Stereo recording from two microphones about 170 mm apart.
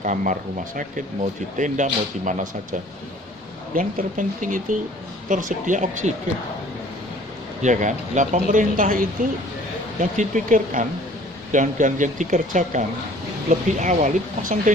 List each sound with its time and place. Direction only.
0.0 s speech: 50° right (ahead or behind)
1.5 s speech: 45° right (ahead or behind)
7.6 s speech: 45° right (ahead or behind)